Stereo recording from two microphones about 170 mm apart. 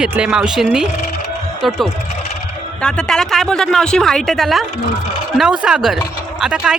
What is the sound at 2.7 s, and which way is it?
Speech, 5° left (ahead or behind).